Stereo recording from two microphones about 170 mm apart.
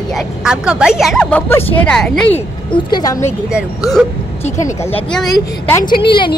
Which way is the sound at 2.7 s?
25° left (ahead or behind).